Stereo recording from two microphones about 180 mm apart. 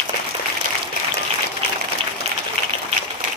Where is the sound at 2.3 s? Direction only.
35° right (ahead or behind).